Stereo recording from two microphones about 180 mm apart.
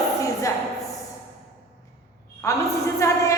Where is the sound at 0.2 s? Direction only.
20° left (ahead or behind).